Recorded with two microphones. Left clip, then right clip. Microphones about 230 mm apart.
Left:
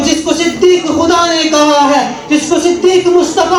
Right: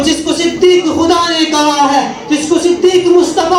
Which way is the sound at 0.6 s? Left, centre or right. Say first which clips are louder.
Right 1 dB; right.